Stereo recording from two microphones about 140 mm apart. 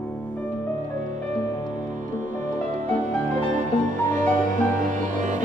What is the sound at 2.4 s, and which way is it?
Music, 65° right (ahead or behind).